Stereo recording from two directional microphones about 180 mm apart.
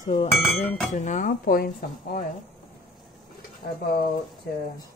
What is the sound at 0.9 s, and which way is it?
Dishes, 45° left (ahead or behind).